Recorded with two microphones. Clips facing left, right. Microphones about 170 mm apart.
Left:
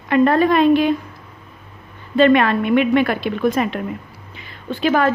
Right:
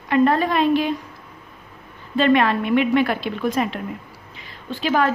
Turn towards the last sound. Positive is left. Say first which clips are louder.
# left 3 dB
turn(degrees=55)  # may be behind; listen again after turning